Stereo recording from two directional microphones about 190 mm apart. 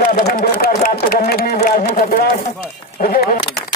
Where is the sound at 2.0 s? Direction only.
50° left (ahead or behind).